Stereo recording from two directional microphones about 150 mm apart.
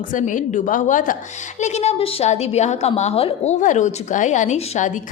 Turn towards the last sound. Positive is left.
turn(degrees=55)  # may be behind; listen again after turning